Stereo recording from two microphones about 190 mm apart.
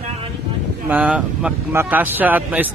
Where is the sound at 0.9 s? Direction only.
5° right (ahead or behind).